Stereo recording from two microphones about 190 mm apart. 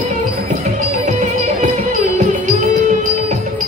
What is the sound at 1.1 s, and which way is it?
Music, 40° right (ahead or behind).